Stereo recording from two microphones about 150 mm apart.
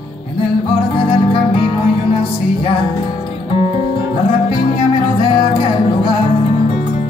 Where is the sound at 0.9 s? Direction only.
30° left (ahead or behind).